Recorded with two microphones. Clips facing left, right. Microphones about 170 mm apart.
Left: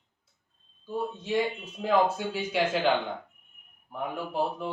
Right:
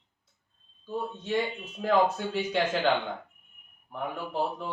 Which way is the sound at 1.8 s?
5° left (ahead or behind).